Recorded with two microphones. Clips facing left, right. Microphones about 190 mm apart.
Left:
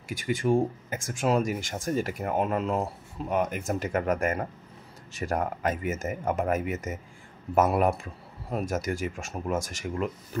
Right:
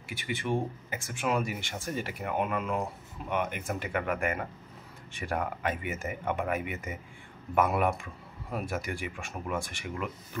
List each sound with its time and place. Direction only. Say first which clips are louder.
0.1 s speech: left 7 dB; 45° left (ahead or behind)